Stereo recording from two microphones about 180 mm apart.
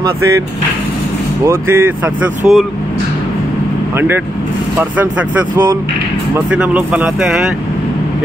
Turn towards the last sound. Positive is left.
turn(degrees=-5)  # may be behind; listen again after turning